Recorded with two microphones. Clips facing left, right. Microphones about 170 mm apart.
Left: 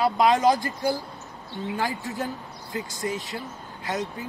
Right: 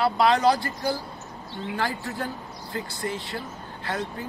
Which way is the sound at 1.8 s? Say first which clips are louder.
Even; 20° left (ahead or behind).